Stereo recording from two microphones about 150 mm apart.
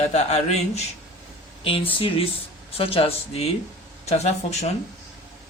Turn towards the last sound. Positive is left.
turn(degrees=45)  # may be behind; listen again after turning